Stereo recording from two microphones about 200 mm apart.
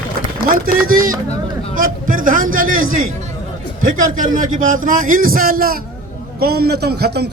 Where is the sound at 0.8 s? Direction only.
45° right (ahead or behind).